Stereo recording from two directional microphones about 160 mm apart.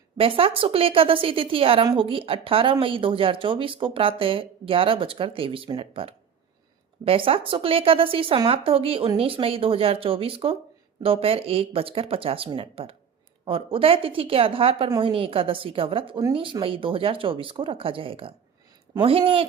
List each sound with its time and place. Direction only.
0.2 s speech: 35° right (ahead or behind)